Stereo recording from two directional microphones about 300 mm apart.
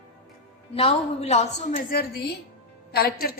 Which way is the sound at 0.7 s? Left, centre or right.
Centre.